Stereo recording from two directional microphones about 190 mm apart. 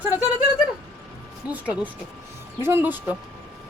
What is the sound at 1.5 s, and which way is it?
A woman's voice, 10° right (ahead or behind).